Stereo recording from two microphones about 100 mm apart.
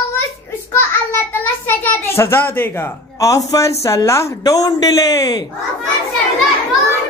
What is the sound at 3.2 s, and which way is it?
Speech, 35° left (ahead or behind).